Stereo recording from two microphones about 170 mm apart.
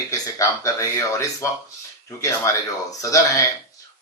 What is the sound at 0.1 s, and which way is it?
Speech, 20° left (ahead or behind).